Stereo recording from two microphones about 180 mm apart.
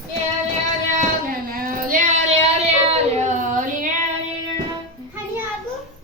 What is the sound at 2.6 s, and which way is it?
Child singing, 40° right (ahead or behind).